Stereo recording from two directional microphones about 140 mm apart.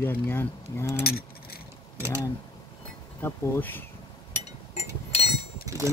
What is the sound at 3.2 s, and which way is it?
Speech, 15° left (ahead or behind).